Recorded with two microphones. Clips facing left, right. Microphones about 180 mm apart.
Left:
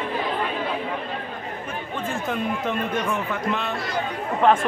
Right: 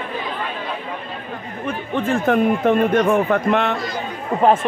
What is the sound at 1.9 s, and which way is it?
Speech, 65° right (ahead or behind).